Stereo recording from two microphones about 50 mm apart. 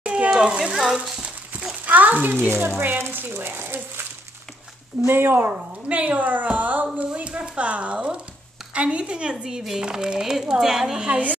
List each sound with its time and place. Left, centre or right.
0.0 s a sound: right
0.3 s a child's voice: centre
1.9 s a sound: right
2.4 s a woman's voice: right
3.3 s speech: right
3.6 s a sound: right
5.0 s speech: right
5.9 s a woman's voice: right; by 11.0 s centre
11.0 s speech: right